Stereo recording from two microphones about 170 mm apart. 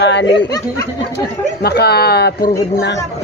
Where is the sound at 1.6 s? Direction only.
70° left (ahead or behind).